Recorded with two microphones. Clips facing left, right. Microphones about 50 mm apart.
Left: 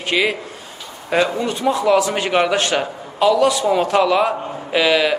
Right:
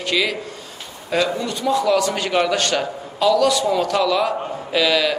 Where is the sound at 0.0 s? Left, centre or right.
Left.